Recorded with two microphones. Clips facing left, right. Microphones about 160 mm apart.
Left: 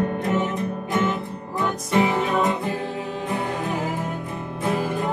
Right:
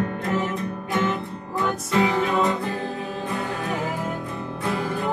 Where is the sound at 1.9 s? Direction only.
20° left (ahead or behind).